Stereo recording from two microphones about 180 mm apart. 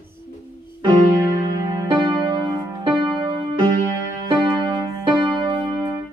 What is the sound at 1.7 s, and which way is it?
Music, 25° right (ahead or behind).